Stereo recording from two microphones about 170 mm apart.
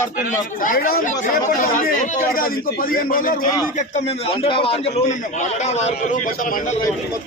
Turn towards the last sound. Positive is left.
turn(degrees=50)  # may be behind; listen again after turning